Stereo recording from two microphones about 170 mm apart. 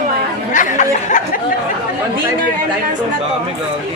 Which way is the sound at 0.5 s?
50° left (ahead or behind).